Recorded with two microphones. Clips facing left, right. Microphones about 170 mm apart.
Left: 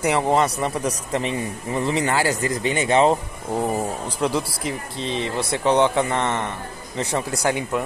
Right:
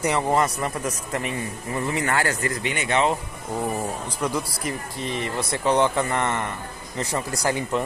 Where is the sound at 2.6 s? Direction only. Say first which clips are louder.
Left 6 dB; 35° left (ahead or behind); by 7.8 s 15° left (ahead or behind).